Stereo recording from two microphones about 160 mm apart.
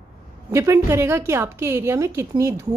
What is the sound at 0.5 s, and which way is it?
A woman's voice, 15° right (ahead or behind).